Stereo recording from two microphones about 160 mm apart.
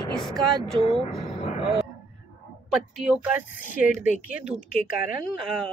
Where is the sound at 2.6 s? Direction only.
5° right (ahead or behind).